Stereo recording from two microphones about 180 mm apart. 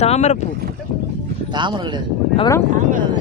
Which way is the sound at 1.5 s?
25° right (ahead or behind).